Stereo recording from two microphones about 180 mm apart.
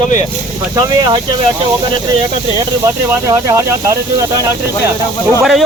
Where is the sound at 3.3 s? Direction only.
20° right (ahead or behind).